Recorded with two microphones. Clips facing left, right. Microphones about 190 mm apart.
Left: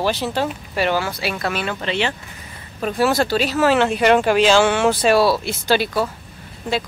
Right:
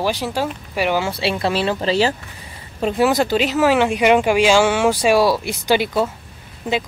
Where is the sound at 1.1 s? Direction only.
30° right (ahead or behind).